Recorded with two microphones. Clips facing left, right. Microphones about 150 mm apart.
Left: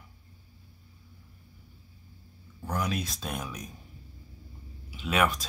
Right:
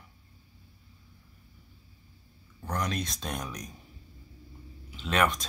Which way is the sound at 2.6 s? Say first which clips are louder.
Left 1 dB; 5° left (ahead or behind).